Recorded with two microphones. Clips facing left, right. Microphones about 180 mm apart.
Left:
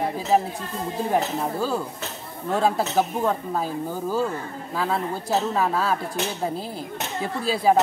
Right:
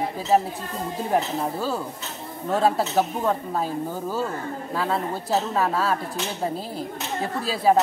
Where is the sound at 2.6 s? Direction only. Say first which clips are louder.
Even; centre (ahead or behind).